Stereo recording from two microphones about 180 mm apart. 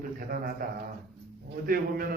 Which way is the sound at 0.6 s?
50° right (ahead or behind).